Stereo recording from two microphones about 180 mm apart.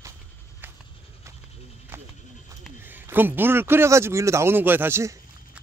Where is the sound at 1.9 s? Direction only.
15° right (ahead or behind).